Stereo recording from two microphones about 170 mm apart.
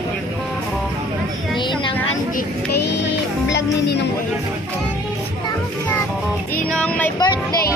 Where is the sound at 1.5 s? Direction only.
30° left (ahead or behind).